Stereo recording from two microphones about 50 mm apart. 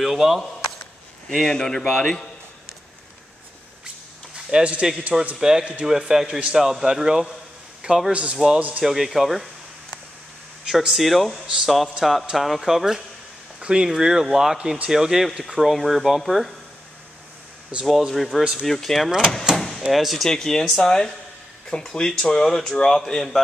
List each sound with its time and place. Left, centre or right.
0.0 s speech: centre
1.4 s speech: centre
4.5 s speech: centre
8.1 s speech: right
8.8 s speech: centre
13.6 s a sound: centre
13.8 s speech: centre
17.8 s speech: centre
19.5 s door: centre
19.9 s speech: centre
20.2 s speech: centre